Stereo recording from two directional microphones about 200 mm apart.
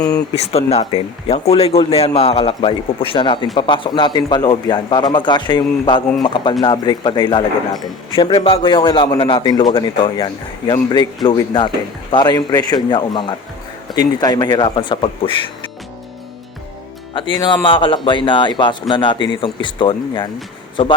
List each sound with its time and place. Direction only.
0.3 s speech: 30° left (ahead or behind)
17.2 s speech: 25° left (ahead or behind)